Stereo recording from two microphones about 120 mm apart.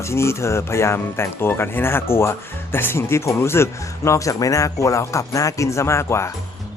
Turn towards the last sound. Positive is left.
turn(degrees=20)  # may be behind; listen again after turning